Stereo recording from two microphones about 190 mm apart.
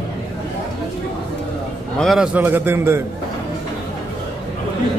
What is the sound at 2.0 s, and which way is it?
A man's voice, centre (ahead or behind).